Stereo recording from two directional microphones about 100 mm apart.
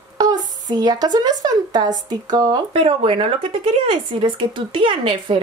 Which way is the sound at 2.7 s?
65° right (ahead or behind).